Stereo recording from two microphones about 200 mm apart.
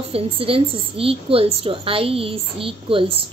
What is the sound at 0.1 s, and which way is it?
A woman's voice, 30° right (ahead or behind).